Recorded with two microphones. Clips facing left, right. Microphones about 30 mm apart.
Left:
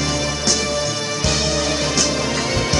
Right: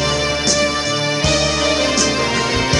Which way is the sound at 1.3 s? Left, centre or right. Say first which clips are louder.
Right 2 dB; centre.